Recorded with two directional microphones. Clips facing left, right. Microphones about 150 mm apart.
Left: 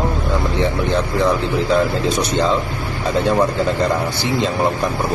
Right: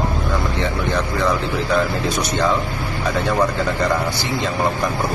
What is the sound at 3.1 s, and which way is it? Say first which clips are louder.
A man's voice: left 3 dB; 20° left (ahead or behind).